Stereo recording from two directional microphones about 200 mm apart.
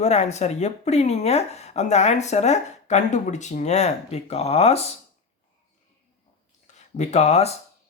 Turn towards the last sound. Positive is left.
turn(degrees=30)  # may be behind; listen again after turning